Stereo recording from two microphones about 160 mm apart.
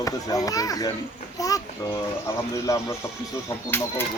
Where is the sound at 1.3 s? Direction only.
20° left (ahead or behind).